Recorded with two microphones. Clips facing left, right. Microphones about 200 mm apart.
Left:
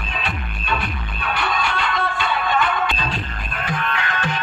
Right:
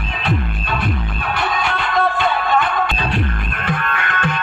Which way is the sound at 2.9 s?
60° right (ahead or behind).